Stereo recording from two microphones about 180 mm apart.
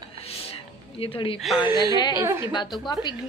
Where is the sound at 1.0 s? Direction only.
30° left (ahead or behind).